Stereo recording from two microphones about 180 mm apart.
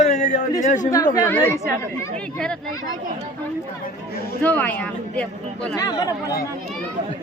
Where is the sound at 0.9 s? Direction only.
20° left (ahead or behind).